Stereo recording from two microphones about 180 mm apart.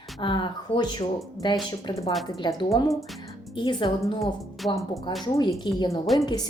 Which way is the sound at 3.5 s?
25° left (ahead or behind).